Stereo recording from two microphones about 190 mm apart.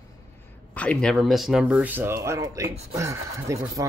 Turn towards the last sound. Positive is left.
turn(degrees=-15)  # may be behind; listen again after turning